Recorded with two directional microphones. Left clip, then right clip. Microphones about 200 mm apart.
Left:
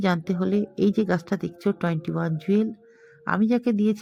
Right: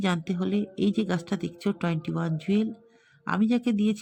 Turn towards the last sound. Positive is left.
turn(degrees=10)  # may be behind; listen again after turning